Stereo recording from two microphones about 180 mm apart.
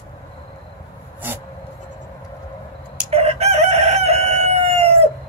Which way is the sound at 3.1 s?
35° right (ahead or behind).